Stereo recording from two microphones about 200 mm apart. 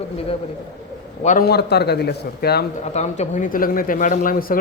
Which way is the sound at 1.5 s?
55° left (ahead or behind).